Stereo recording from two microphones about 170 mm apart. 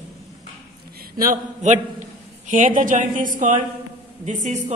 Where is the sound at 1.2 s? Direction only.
50° right (ahead or behind).